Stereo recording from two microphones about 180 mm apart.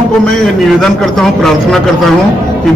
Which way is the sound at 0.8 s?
Centre (ahead or behind).